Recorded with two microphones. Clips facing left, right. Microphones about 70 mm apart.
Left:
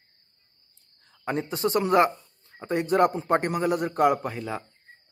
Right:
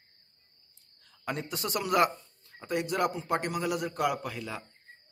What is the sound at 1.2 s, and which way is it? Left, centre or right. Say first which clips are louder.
Speech: left 8 dB; left.